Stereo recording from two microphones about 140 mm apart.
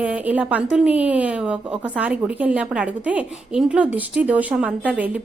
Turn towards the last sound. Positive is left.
turn(degrees=-10)  # may be behind; listen again after turning